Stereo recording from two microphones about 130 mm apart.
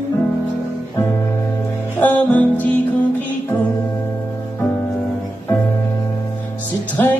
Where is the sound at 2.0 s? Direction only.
10° left (ahead or behind).